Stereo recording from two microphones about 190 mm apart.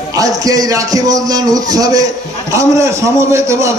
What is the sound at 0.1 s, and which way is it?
A man's voice, 20° right (ahead or behind).